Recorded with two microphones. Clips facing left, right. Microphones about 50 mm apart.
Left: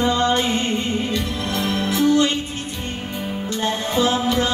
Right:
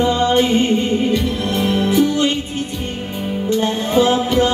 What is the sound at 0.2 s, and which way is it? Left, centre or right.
Mantra, right.